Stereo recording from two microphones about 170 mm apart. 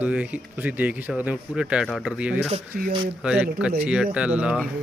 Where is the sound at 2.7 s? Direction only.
60° right (ahead or behind).